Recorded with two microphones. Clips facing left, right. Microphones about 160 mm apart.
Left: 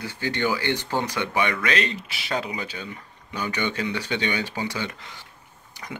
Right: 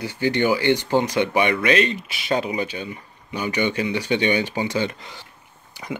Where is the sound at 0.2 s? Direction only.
15° right (ahead or behind).